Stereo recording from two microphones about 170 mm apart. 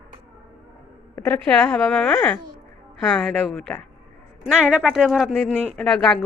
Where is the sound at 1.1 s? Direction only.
10° left (ahead or behind).